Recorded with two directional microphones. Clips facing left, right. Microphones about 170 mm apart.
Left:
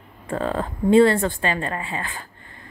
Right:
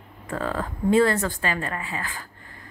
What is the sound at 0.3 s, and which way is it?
A woman's voice, 25° left (ahead or behind).